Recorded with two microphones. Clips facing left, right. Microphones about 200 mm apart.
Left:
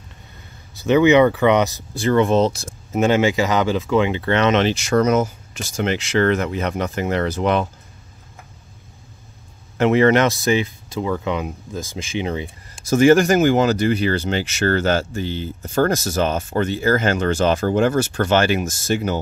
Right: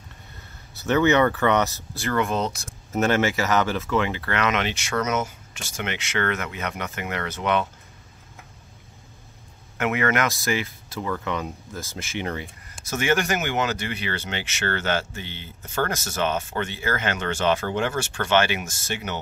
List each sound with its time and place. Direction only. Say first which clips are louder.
0.7 s speech: left 6 dB; 15° left (ahead or behind)
2.2 s speech: left 9 dB; 30° left (ahead or behind)
2.9 s speech: left 5 dB; 15° left (ahead or behind); by 7.6 s 35° left (ahead or behind)
9.8 s speech: left 9 dB; 30° left (ahead or behind)
12.8 s speech: left 11 dB; 35° left (ahead or behind)